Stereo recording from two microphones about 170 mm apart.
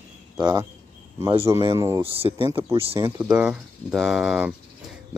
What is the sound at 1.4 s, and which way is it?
Speech, 20° right (ahead or behind).